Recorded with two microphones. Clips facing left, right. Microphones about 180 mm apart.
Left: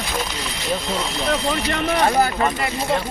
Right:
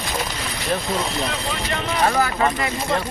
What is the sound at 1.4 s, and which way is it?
Speech, 60° left (ahead or behind).